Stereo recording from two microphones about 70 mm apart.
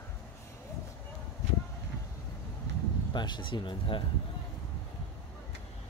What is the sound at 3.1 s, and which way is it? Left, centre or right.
Speech, left.